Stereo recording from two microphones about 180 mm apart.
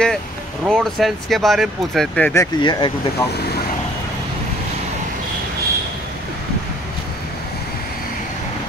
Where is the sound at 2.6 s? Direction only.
25° left (ahead or behind).